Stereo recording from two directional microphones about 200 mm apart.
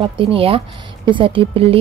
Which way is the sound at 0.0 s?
25° right (ahead or behind).